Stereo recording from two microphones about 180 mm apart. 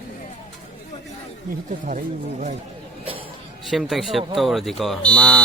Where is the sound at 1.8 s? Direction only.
45° right (ahead or behind).